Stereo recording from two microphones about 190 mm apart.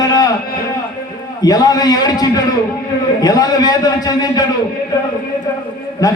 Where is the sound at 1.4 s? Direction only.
20° left (ahead or behind).